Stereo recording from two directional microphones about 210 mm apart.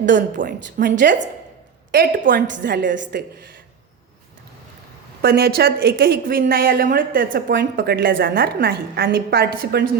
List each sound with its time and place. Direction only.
0.1 s a woman's voice: 40° right (ahead or behind)
1.9 s a woman's voice: 55° right (ahead or behind)
2.2 s a woman's voice: 40° right (ahead or behind)
5.2 s a woman's voice: 50° right (ahead or behind)